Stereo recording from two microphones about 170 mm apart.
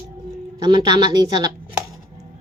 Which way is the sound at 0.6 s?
20° right (ahead or behind).